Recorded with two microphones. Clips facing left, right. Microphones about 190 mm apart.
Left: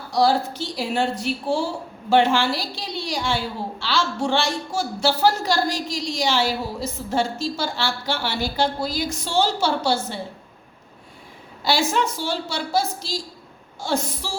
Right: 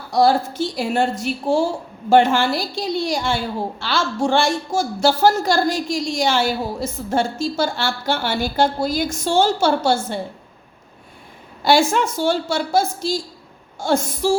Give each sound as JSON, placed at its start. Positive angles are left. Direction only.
{"t": 0.1, "sound": "speech", "side_deg": -50}
{"t": 11.6, "sound": "speech", "side_deg": -50}